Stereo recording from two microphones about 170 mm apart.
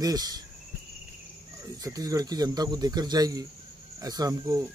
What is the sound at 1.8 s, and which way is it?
Speech, 20° right (ahead or behind).